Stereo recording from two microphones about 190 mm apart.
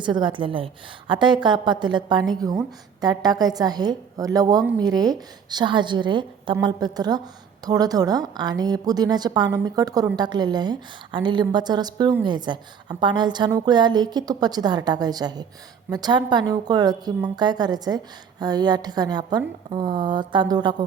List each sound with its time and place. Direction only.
0.0 s a woman's voice: 25° right (ahead or behind)